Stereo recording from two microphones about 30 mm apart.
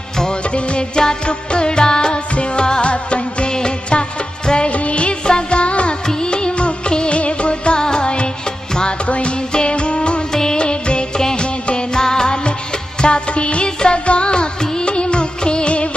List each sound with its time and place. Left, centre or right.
0.7 s music: left
3.5 s music: left
4.6 s music: left
5.2 s music: left
6.0 s music of bollywood: left
7.2 s music: left
10.3 s music: left
10.6 s music: left
13.0 s music: left
14.6 s music of bollywood: left